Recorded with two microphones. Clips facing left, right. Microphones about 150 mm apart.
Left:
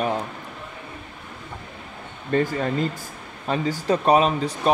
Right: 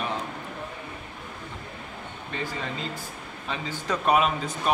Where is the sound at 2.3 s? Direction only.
50° left (ahead or behind).